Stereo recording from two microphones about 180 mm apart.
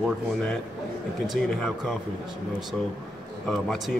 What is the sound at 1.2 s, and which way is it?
Speech, centre (ahead or behind).